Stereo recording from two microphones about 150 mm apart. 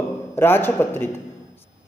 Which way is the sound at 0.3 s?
15° left (ahead or behind).